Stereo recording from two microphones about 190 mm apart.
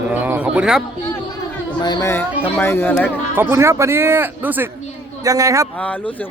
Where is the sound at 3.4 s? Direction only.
15° right (ahead or behind).